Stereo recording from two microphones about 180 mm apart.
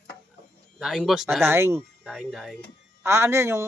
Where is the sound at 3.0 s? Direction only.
15° right (ahead or behind).